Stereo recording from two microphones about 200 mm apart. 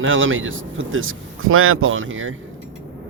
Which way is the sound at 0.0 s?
75° right (ahead or behind).